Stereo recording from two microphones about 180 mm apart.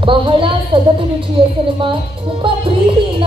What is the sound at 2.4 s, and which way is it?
Music, 30° right (ahead or behind).